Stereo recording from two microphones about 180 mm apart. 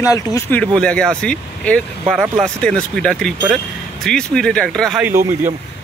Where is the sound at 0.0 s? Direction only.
15° left (ahead or behind).